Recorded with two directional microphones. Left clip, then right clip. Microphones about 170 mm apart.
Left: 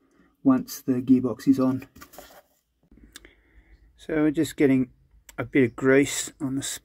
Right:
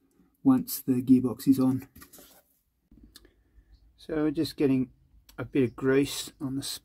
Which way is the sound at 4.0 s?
20° left (ahead or behind).